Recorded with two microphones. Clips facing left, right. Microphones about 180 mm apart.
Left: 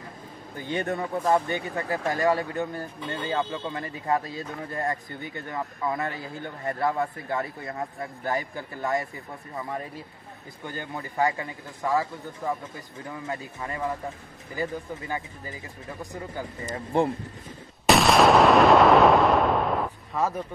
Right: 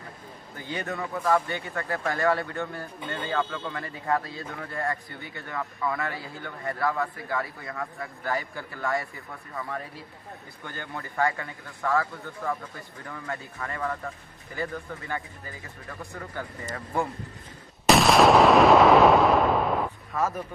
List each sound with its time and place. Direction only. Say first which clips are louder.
0.6 s speech: left 4 dB; 20° left (ahead or behind)
17.8 s artillery fire: even; centre (ahead or behind)